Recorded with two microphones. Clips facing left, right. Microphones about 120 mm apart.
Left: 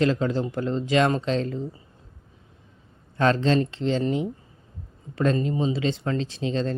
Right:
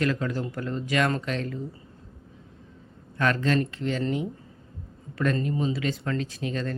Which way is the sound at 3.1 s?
25° left (ahead or behind).